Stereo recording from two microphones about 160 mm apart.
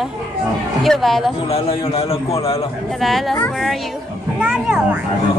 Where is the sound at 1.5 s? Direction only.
35° left (ahead or behind).